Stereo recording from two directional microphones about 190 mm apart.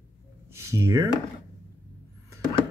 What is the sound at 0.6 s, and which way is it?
Speech, 15° right (ahead or behind).